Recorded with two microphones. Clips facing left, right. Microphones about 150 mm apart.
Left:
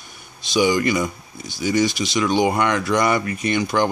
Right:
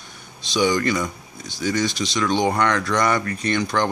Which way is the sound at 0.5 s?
10° left (ahead or behind).